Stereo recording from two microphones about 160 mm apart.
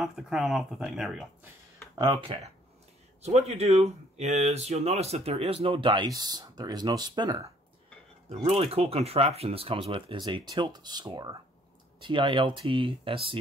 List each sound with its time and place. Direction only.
0.0 s speech: 5° right (ahead or behind)
2.0 s speech: 25° right (ahead or behind)
3.2 s speech: 40° right (ahead or behind)
8.5 s speech: 40° right (ahead or behind)